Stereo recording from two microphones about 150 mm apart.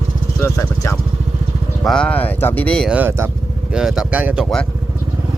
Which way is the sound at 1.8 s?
5° left (ahead or behind).